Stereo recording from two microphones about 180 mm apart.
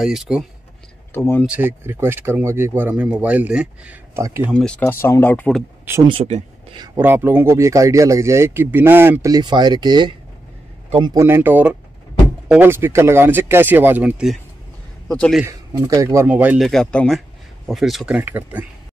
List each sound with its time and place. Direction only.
0.0 s speech: centre (ahead or behind)
1.1 s speech: 15° left (ahead or behind)
1.4 s speech: 10° right (ahead or behind)
4.5 s speech: 5° left (ahead or behind)
6.0 s speech: 35° right (ahead or behind)
7.0 s speech: 10° right (ahead or behind)
11.1 s speech: 15° right (ahead or behind); by 15.4 s 5° left (ahead or behind)
15.4 s speech: 15° right (ahead or behind)